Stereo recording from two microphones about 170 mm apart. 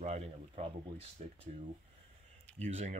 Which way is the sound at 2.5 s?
40° right (ahead or behind).